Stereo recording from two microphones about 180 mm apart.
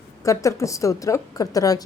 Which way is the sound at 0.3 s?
15° left (ahead or behind).